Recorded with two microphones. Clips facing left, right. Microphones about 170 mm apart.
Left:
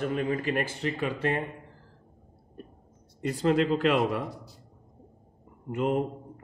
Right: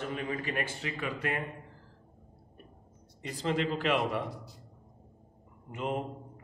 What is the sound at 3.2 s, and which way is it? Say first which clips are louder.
Speech: left 7 dB; 45° left (ahead or behind).